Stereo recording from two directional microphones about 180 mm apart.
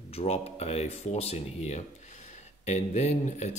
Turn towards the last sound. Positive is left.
turn(degrees=40)  # may be behind; listen again after turning